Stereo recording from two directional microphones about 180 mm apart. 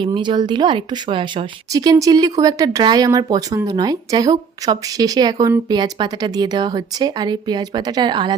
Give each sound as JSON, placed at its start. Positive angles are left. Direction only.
{"t": 0.0, "sound": "a woman's voice", "side_deg": -25}